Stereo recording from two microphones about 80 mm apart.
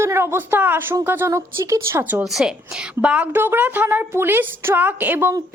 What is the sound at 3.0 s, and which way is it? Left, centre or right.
Speech, centre.